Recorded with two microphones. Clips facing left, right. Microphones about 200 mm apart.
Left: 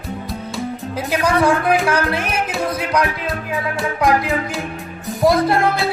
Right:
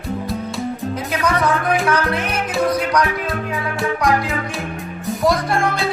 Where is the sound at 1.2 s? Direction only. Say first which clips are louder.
Left 3 dB; 30° left (ahead or behind).